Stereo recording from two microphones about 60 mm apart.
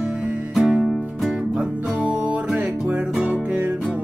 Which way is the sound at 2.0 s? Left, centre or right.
Right.